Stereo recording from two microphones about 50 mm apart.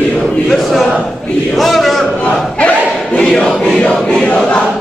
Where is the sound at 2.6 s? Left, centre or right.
Left.